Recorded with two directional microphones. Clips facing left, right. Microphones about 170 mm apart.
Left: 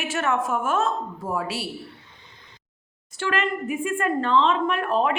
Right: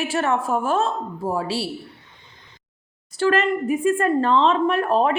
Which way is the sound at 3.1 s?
40° right (ahead or behind).